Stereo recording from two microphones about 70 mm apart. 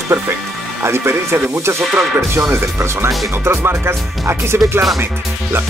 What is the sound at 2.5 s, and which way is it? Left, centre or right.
Speech, right.